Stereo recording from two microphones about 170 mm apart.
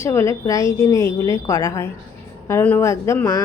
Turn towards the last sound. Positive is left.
turn(degrees=15)  # may be behind; listen again after turning